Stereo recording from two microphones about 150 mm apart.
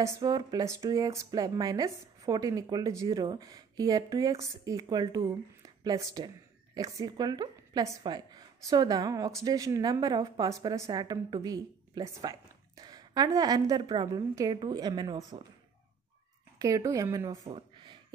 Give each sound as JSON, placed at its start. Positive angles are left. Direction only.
{"t": 0.0, "sound": "a woman's voice", "side_deg": -25}
{"t": 16.5, "sound": "speech", "side_deg": -20}
{"t": 17.3, "sound": "a sound", "side_deg": -35}